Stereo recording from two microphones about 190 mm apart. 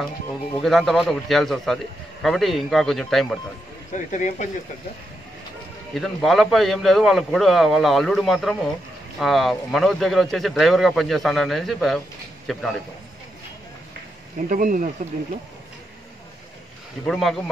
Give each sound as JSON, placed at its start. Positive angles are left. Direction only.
{"t": 0.6, "sound": "a man's voice", "side_deg": 0}
{"t": 3.9, "sound": "speech", "side_deg": 40}
{"t": 5.9, "sound": "a man's voice", "side_deg": 0}
{"t": 14.5, "sound": "speech", "side_deg": -45}
{"t": 17.0, "sound": "a man's voice", "side_deg": 0}